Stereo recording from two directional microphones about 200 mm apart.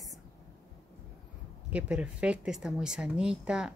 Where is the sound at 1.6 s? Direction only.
5° right (ahead or behind).